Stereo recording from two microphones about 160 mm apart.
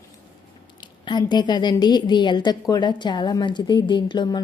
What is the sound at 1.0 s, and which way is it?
A woman's voice, 25° left (ahead or behind).